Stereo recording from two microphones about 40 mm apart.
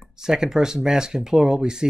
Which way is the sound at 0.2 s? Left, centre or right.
Centre.